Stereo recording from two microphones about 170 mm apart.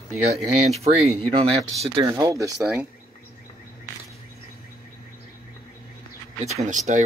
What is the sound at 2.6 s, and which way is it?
Speech, 5° right (ahead or behind).